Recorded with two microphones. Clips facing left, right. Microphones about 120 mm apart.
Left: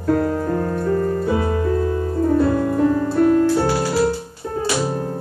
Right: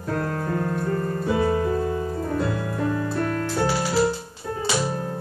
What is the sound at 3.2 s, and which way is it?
Music, 20° left (ahead or behind).